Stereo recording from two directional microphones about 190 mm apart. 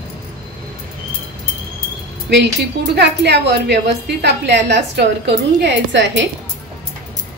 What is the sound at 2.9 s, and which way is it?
A woman's voice, 65° right (ahead or behind).